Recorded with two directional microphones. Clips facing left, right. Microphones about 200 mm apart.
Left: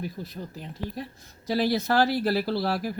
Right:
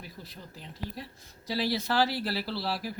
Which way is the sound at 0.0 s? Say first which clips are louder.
Left 11 dB; 50° left (ahead or behind).